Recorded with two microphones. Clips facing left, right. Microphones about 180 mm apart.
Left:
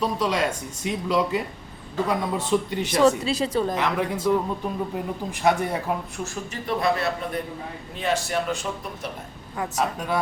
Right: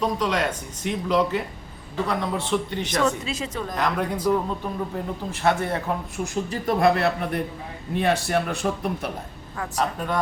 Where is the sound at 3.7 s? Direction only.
5° left (ahead or behind).